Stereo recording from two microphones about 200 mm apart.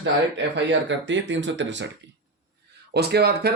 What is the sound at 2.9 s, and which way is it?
Speech, 55° right (ahead or behind).